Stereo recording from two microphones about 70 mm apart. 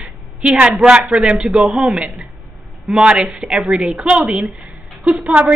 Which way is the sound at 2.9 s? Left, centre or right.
Centre.